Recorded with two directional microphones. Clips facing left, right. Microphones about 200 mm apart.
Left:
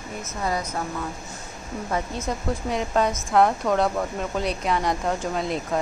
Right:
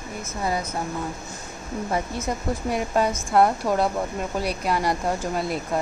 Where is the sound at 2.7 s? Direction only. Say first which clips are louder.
Even; 10° right (ahead or behind).